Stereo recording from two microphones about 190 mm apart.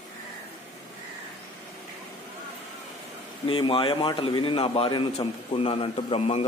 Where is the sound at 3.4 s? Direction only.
30° left (ahead or behind).